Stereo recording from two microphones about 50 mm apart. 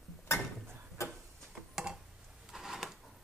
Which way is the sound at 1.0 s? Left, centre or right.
Left.